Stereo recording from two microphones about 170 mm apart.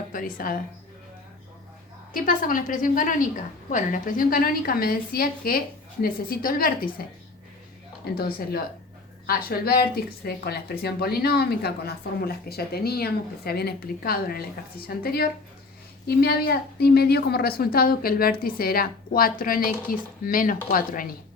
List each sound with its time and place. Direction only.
0.1 s a woman's voice: 55° left (ahead or behind)
2.1 s a woman's voice: 55° left (ahead or behind)
8.1 s a woman's voice: 65° left (ahead or behind)